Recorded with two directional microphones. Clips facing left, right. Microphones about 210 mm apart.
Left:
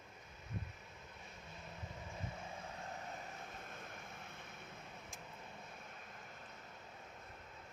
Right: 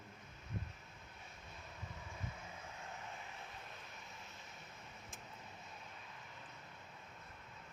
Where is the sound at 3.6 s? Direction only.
50° left (ahead or behind).